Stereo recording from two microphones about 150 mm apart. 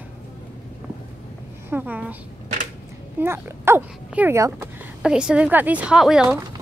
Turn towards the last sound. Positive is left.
turn(degrees=-5)  # may be behind; listen again after turning